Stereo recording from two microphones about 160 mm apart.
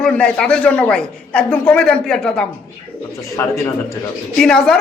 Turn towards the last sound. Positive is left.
turn(degrees=5)  # may be behind; listen again after turning